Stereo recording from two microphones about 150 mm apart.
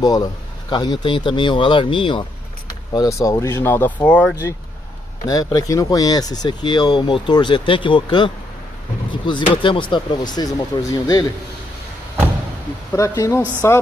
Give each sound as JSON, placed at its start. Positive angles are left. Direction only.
{"t": 0.0, "sound": "speech", "side_deg": 25}
{"t": 2.9, "sound": "speech", "side_deg": 25}
{"t": 5.3, "sound": "speech", "side_deg": 25}
{"t": 12.9, "sound": "speech", "side_deg": 20}